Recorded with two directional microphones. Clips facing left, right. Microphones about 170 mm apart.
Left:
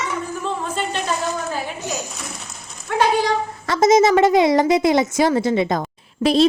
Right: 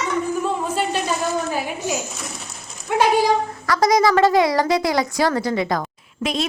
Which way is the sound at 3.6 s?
25° left (ahead or behind).